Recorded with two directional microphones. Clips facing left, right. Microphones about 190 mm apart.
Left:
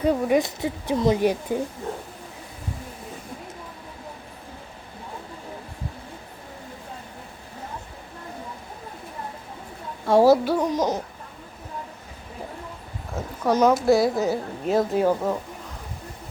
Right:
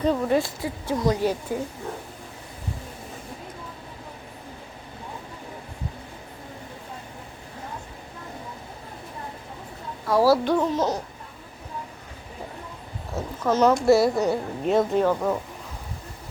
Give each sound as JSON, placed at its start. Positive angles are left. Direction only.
{"t": 0.0, "sound": "speech", "side_deg": 10}
{"t": 10.1, "sound": "speech", "side_deg": 20}
{"t": 10.4, "sound": "speech", "side_deg": 10}
{"t": 13.4, "sound": "speech", "side_deg": 10}
{"t": 13.8, "sound": "a woman's voice", "side_deg": 0}